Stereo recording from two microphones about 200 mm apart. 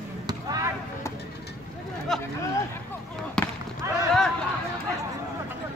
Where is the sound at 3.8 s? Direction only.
15° right (ahead or behind).